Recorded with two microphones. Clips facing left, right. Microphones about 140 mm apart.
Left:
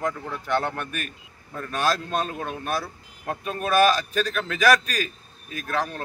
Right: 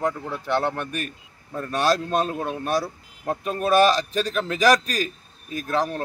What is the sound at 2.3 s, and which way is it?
Speech, 30° right (ahead or behind).